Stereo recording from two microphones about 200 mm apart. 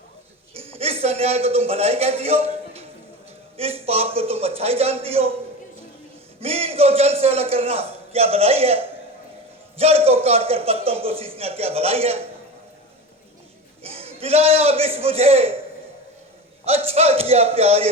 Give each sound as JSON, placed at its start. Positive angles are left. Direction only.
{"t": 0.5, "sound": "a man's voice", "side_deg": -30}
{"t": 6.4, "sound": "a man's voice", "side_deg": -30}
{"t": 13.8, "sound": "a man's voice", "side_deg": -30}
{"t": 16.6, "sound": "a man's voice", "side_deg": -30}